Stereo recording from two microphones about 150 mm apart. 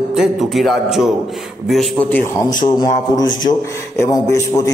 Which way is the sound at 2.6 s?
25° left (ahead or behind).